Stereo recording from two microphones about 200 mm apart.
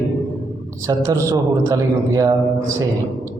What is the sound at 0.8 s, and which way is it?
A man's voice, 15° right (ahead or behind).